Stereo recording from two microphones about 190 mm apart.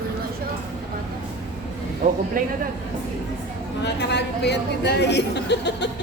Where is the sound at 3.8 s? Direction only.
65° left (ahead or behind).